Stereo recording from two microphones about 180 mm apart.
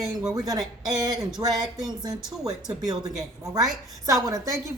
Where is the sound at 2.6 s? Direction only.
20° right (ahead or behind).